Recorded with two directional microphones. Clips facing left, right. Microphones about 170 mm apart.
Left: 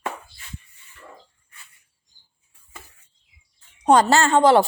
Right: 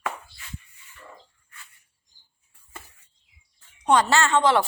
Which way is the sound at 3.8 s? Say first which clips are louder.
Left 4 dB; 40° left (ahead or behind).